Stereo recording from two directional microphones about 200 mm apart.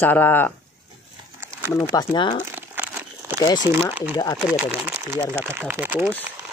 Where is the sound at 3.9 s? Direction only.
10° right (ahead or behind).